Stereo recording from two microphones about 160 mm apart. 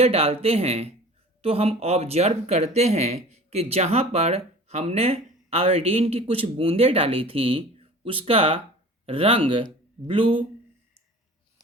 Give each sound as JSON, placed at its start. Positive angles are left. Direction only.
{"t": 0.0, "sound": "speech", "side_deg": -40}